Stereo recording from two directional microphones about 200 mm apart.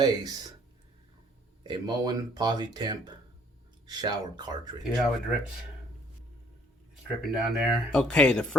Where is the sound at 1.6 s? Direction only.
20° right (ahead or behind).